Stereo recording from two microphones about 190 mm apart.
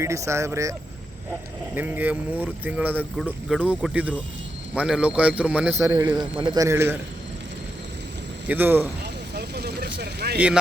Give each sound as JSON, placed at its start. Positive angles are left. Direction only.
{"t": 0.0, "sound": "speech", "side_deg": -15}
{"t": 8.4, "sound": "speech", "side_deg": -10}
{"t": 9.3, "sound": "vehicle", "side_deg": -60}
{"t": 10.0, "sound": "speech", "side_deg": -60}
{"t": 10.3, "sound": "speech", "side_deg": -5}